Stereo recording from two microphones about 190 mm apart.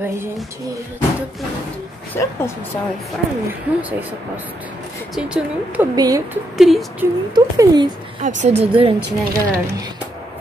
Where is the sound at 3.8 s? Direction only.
10° right (ahead or behind).